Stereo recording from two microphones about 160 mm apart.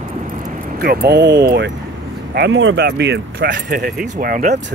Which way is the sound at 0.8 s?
80° right.